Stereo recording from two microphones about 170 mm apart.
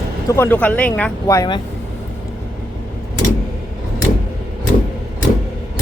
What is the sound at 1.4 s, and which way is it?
Speech, 25° left (ahead or behind).